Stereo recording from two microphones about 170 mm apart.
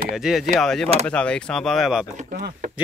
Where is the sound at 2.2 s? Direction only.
45° right (ahead or behind).